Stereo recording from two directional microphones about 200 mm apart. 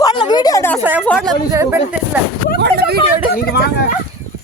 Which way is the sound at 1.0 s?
Centre (ahead or behind).